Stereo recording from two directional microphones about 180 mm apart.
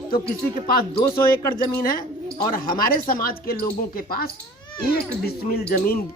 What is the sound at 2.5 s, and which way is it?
Speech, 55° left (ahead or behind).